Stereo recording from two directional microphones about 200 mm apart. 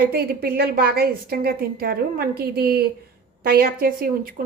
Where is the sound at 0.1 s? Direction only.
50° right (ahead or behind).